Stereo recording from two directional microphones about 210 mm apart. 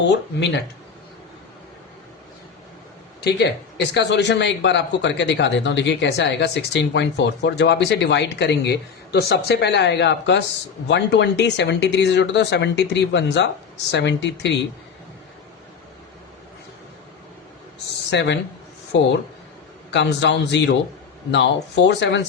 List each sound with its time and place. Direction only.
3.2 s speech: 50° left (ahead or behind)
18.1 s speech: 55° left (ahead or behind)